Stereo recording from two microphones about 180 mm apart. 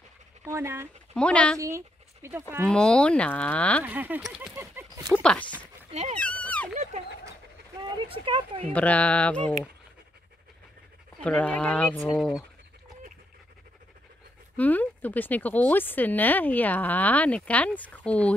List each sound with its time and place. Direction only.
0.5 s speech: 15° right (ahead or behind)
1.1 s speech: 5° left (ahead or behind)
1.6 s speech: 15° right (ahead or behind)
2.6 s speech: 5° left (ahead or behind)
3.8 s speech: 10° right (ahead or behind)
4.6 s a sound: 15° right (ahead or behind)
5.1 s speech: 5° left (ahead or behind)
5.9 s a sound: 35° right (ahead or behind)
6.1 s a sound: 5° left (ahead or behind)
6.7 s dog: 40° right (ahead or behind)
8.1 s speech: 30° right (ahead or behind)
8.7 s speech: 10° left (ahead or behind)
11.1 s speech: 5° left (ahead or behind)
14.6 s speech: 10° left (ahead or behind)